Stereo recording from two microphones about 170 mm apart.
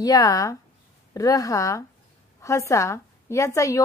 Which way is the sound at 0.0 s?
20° left (ahead or behind).